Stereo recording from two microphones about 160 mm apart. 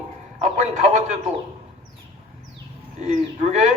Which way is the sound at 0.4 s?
45° right (ahead or behind).